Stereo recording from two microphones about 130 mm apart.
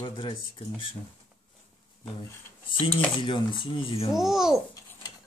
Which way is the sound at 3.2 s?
40° left (ahead or behind).